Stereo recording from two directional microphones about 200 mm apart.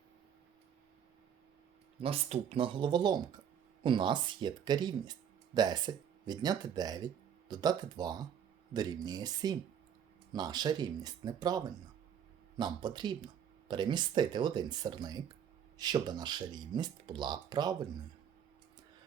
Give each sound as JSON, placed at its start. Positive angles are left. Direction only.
{"t": 2.0, "sound": "speech", "side_deg": -30}